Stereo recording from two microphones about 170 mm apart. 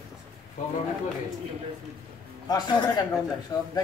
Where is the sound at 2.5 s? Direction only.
25° left (ahead or behind).